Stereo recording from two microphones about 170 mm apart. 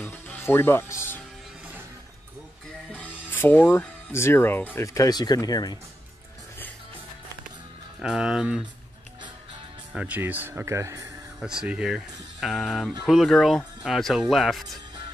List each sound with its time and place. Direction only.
0.0 s music: 10° left (ahead or behind)
2.9 s music: 10° left (ahead or behind)
3.7 s speech: 15° left (ahead or behind)
8.0 s speech: 5° right (ahead or behind)
9.9 s speech: 10° right (ahead or behind)
11.3 s speech: 5° right (ahead or behind)